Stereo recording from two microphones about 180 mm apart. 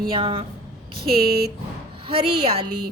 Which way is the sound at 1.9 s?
30° right (ahead or behind).